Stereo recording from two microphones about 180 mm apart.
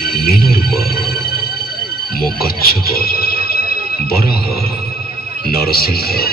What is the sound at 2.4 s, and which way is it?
Speech, 55° left (ahead or behind).